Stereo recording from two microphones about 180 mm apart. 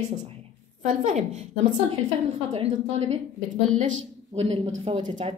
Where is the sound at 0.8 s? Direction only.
45° right (ahead or behind).